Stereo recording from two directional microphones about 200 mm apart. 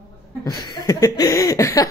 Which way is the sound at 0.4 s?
20° left (ahead or behind).